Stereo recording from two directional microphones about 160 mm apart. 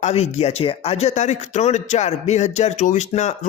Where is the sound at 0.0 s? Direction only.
40° left (ahead or behind).